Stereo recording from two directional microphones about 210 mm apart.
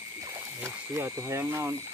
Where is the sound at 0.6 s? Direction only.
10° right (ahead or behind).